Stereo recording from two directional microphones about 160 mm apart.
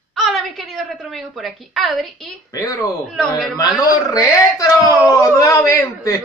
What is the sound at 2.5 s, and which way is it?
Speech, 20° left (ahead or behind).